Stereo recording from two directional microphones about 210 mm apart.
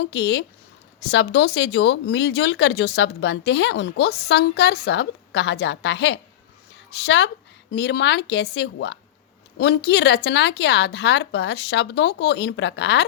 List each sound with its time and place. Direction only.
0.0 s speech: 55° left (ahead or behind)